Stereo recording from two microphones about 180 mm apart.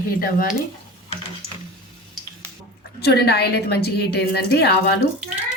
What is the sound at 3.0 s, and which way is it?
A woman's voice, 65° left (ahead or behind).